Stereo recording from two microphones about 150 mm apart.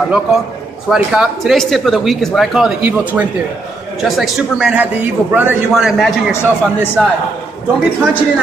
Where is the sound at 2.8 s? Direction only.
10° right (ahead or behind).